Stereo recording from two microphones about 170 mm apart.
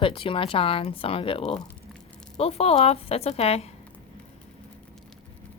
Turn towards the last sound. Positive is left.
turn(degrees=35)  # may be behind; listen again after turning